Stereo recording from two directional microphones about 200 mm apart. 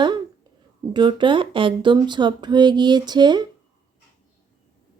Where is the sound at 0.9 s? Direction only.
25° right (ahead or behind).